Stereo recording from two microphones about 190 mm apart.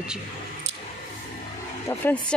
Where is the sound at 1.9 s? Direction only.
10° left (ahead or behind).